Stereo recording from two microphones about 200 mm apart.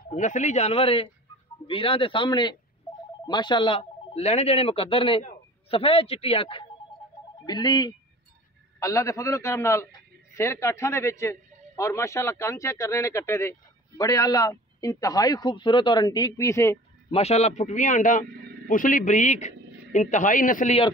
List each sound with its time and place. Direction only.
0.1 s a man's voice: 35° left (ahead or behind); by 16.7 s 15° left (ahead or behind)
17.1 s a man's voice: 30° left (ahead or behind)